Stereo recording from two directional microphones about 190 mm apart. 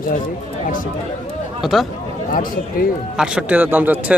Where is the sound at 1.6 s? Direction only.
Centre (ahead or behind).